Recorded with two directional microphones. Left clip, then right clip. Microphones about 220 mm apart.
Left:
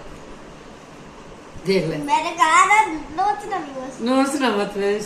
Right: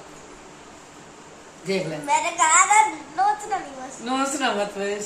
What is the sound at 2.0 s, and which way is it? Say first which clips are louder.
A child's voice: left 1 dB; 20° right (ahead or behind).